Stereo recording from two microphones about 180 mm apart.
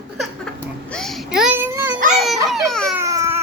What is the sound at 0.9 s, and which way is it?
Babbling, centre (ahead or behind).